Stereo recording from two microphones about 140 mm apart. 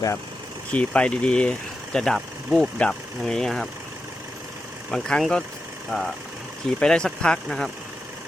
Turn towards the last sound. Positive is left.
turn(degrees=5)  # may be behind; listen again after turning